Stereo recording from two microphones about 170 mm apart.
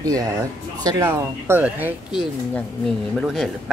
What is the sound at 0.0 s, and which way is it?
Speech, 20° right (ahead or behind).